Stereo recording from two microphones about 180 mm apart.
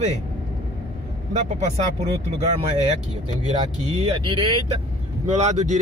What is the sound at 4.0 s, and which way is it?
Speech, 30° right (ahead or behind).